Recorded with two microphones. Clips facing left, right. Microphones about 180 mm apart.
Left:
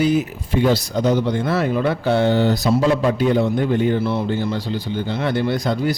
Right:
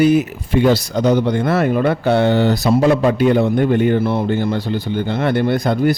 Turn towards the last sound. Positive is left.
turn(degrees=-55)  # may be behind; listen again after turning